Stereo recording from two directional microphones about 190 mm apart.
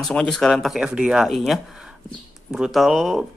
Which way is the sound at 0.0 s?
5° left (ahead or behind).